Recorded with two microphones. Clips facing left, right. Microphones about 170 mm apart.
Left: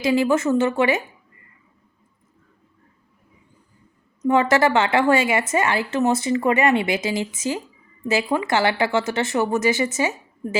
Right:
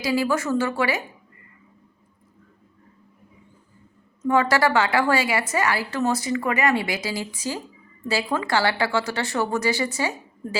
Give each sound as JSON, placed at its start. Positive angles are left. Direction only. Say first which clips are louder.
{"t": 0.0, "sound": "a woman's voice", "louder": "left 4 dB", "side_deg": 25}
{"t": 4.2, "sound": "a woman's voice", "louder": "left 3 dB", "side_deg": 20}